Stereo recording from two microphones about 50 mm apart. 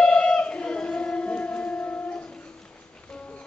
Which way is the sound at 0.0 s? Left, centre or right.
Centre.